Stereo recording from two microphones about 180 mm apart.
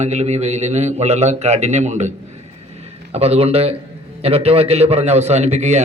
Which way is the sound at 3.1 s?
35° right (ahead or behind).